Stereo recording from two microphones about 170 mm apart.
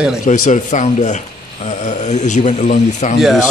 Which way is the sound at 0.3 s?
45° left (ahead or behind).